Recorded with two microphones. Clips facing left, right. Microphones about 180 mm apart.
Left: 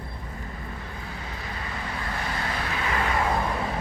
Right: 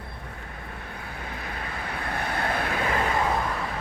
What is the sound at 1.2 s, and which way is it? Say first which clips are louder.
Vehicle: right 3 dB; 55° right (ahead or behind).